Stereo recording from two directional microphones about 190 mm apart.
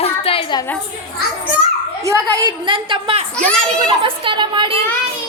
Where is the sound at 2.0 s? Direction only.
15° right (ahead or behind).